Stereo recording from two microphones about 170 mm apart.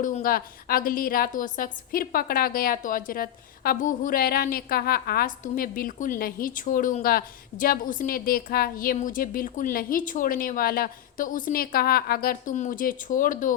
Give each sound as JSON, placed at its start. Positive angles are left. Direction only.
{"t": 0.0, "sound": "a woman's voice", "side_deg": 55}